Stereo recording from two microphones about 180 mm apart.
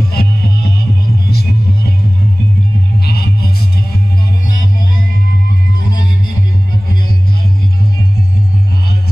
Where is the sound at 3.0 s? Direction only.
60° left (ahead or behind).